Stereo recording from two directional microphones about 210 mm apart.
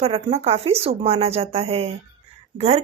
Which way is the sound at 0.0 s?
30° right (ahead or behind).